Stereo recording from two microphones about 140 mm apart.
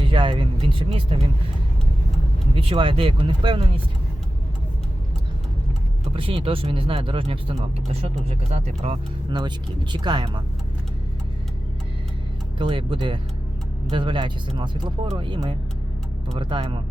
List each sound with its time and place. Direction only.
0.1 s speech: 35° right (ahead or behind)
2.6 s speech: 40° right (ahead or behind)
6.1 s speech: 40° right (ahead or behind)
9.9 s speech: 30° right (ahead or behind)
12.5 s speech: 35° right (ahead or behind)